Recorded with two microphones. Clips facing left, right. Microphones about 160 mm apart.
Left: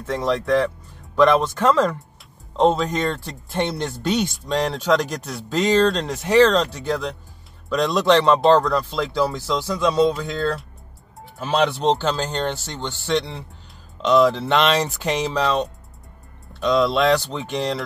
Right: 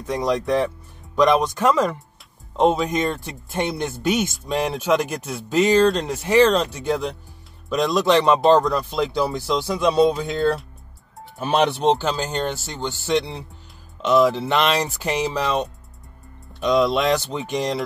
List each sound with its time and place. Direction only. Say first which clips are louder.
0.0 s speech: even; 15° right (ahead or behind)
6.3 s speech: left 1 dB; 20° right (ahead or behind)